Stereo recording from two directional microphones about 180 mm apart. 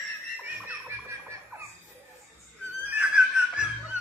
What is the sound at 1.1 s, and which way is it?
Music, 15° right (ahead or behind).